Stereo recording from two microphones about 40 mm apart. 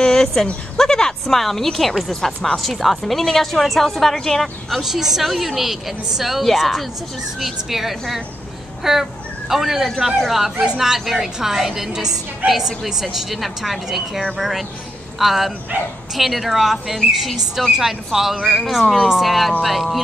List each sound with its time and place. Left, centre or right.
0.0 s a sound: centre
1.3 s a woman's voice: centre
4.8 s a woman's voice: centre